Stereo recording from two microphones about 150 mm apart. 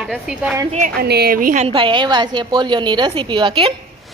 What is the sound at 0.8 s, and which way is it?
Speech, 90° right.